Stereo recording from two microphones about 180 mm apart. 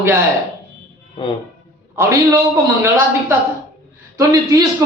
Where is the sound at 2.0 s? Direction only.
15° right (ahead or behind).